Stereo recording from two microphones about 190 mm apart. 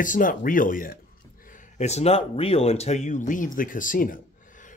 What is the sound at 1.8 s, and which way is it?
Speech, 35° left (ahead or behind).